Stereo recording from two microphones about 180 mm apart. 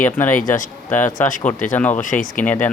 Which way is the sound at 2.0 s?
50° left (ahead or behind).